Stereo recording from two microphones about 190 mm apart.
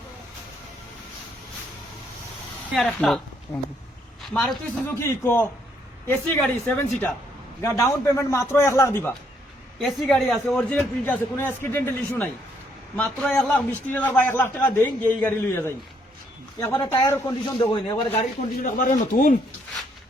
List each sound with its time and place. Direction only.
2.6 s speech: centre (ahead or behind)
4.9 s a man's voice: 15° left (ahead or behind)
9.7 s a man's voice: centre (ahead or behind); by 17.3 s 15° left (ahead or behind)
17.6 s speech: 25° left (ahead or behind)
18.6 s speech: 45° left (ahead or behind)